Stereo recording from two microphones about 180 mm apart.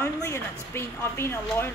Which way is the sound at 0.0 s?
15° left (ahead or behind).